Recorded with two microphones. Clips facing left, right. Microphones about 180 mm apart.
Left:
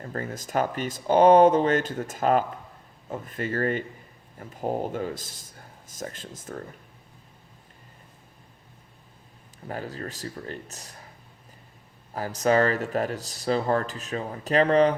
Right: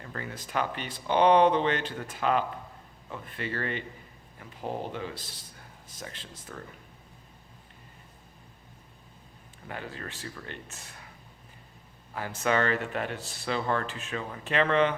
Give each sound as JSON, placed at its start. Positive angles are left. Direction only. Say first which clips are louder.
{"t": 0.0, "sound": "speech", "louder": "left 6 dB", "side_deg": 40}
{"t": 9.6, "sound": "speech", "louder": "left 5 dB", "side_deg": 40}
{"t": 12.1, "sound": "speech", "louder": "left 6 dB", "side_deg": 40}